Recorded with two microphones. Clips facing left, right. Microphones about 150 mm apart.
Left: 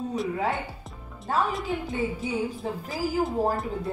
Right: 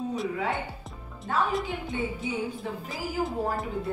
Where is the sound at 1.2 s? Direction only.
Centre (ahead or behind).